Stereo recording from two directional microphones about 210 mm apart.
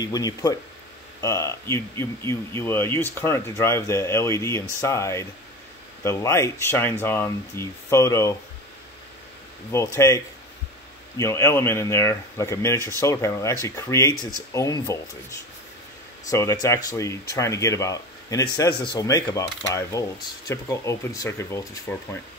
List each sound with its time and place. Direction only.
0.0 s speech: 15° left (ahead or behind)
9.7 s speech: 15° left (ahead or behind)
16.3 s speech: 15° left (ahead or behind)